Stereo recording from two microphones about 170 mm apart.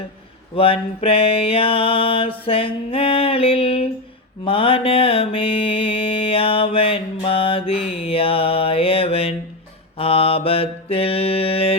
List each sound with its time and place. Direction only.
0.5 s mantra: 35° left (ahead or behind)